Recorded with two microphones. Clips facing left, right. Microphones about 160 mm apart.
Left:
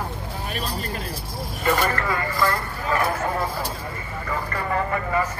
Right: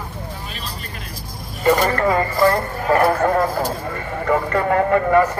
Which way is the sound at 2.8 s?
55° right (ahead or behind).